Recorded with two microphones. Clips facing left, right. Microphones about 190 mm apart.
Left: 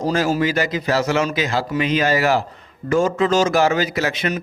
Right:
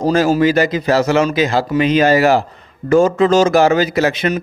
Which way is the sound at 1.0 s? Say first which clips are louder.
Right 6 dB; 35° right (ahead or behind).